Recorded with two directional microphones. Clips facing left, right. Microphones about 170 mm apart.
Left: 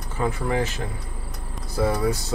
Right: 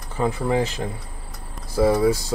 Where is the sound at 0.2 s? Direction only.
20° right (ahead or behind).